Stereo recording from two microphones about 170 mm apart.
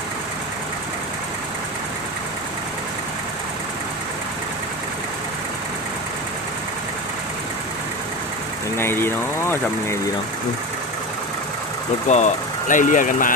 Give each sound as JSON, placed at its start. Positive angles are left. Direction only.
{"t": 8.7, "sound": "speech", "side_deg": 15}
{"t": 12.0, "sound": "speech", "side_deg": 45}